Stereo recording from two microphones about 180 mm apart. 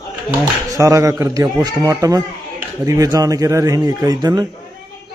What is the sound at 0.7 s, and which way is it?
Speech, 20° right (ahead or behind).